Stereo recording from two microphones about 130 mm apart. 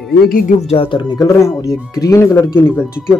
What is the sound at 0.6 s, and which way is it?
Speech, 45° left (ahead or behind).